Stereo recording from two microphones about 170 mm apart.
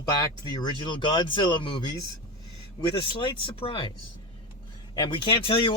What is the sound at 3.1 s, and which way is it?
Speech, 30° left (ahead or behind).